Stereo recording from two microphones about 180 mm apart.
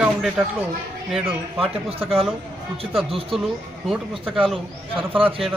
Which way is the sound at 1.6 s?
35° right (ahead or behind).